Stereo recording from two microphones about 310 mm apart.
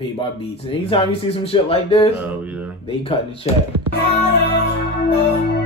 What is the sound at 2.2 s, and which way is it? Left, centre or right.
Speech, centre.